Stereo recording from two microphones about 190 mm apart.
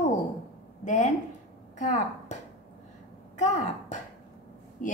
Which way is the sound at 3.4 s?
40° left (ahead or behind).